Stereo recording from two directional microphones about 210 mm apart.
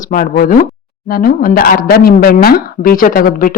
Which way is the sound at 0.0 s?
40° left (ahead or behind).